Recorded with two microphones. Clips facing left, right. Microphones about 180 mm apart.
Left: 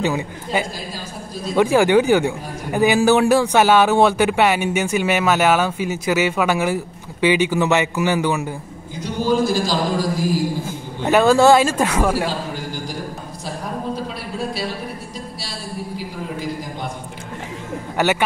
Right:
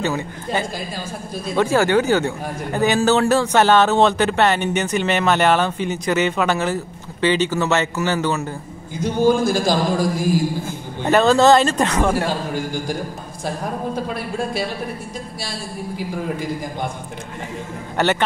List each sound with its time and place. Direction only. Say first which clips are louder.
0.0 s a man's voice: left 1 dB; 15° left (ahead or behind)
9.0 s a man's voice: right 3 dB; 50° right (ahead or behind)
11.1 s a man's voice: left 1 dB; 10° left (ahead or behind)
18.0 s a man's voice: even; 10° left (ahead or behind)